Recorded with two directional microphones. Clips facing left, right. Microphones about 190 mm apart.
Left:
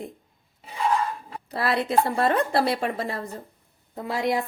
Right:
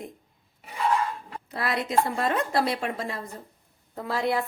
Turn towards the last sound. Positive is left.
turn(degrees=15)  # may be behind; listen again after turning